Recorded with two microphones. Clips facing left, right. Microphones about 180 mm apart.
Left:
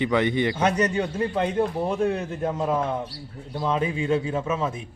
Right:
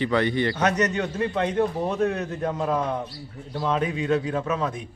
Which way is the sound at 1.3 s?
10° left (ahead or behind).